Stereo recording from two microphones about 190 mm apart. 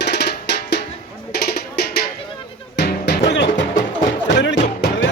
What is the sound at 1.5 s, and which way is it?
Music, 55° left (ahead or behind).